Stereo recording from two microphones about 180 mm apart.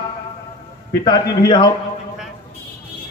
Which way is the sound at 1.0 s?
25° left (ahead or behind).